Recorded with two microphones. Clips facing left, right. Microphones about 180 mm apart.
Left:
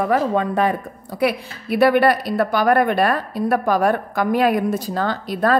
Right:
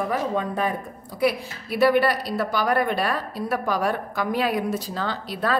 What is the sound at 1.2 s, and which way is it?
A woman's voice, 60° left (ahead or behind).